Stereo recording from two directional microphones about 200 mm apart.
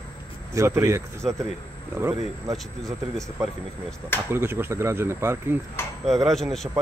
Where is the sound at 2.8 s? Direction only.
Centre (ahead or behind).